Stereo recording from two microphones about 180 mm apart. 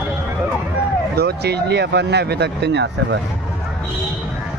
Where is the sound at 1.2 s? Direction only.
65° right (ahead or behind).